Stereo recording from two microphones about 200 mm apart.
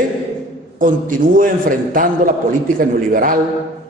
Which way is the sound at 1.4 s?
45° right (ahead or behind).